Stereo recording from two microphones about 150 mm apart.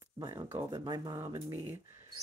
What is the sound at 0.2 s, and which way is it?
Speech, 20° right (ahead or behind).